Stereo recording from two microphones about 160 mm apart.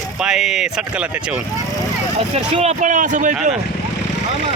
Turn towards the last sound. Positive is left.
turn(degrees=-50)  # may be behind; listen again after turning